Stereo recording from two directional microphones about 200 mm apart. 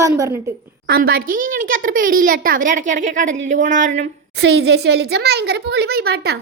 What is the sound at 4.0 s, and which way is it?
A woman's voice, 60° right (ahead or behind).